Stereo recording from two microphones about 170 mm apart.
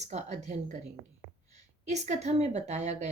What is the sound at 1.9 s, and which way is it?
A woman's voice, 45° right (ahead or behind).